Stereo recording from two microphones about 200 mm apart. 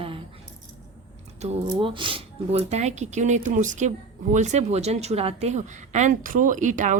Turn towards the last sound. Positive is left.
turn(degrees=-40)  # may be behind; listen again after turning